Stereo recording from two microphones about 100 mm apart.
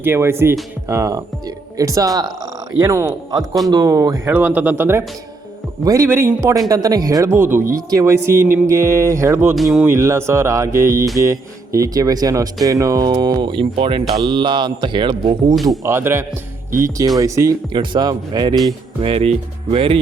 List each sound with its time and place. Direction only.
0.0 s speech: 25° right (ahead or behind)
4.3 s speech: 15° right (ahead or behind)
9.6 s speech: centre (ahead or behind)
9.8 s speech: 25° right (ahead or behind)
13.5 s speech: 60° right (ahead or behind)
15.8 s speech: 25° right (ahead or behind)
17.7 s speech: 50° right (ahead or behind)
19.0 s speech: 75° right (ahead or behind)